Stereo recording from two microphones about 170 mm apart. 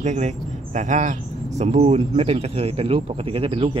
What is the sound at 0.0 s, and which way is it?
Speech, 45° right (ahead or behind).